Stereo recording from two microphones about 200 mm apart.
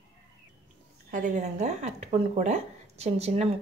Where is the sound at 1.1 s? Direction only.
40° right (ahead or behind).